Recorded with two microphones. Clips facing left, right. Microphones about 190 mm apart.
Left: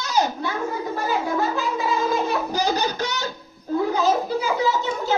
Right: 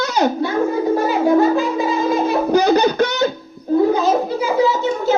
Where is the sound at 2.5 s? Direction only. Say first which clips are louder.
Right 10 dB; 60° right (ahead or behind).